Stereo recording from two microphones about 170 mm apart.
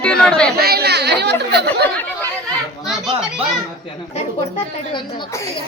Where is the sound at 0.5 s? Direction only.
65° right (ahead or behind).